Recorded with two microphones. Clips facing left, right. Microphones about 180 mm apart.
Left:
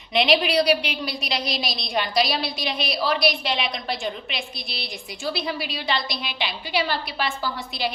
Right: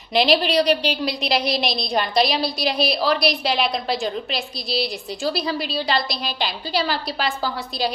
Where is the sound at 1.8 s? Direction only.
40° right (ahead or behind).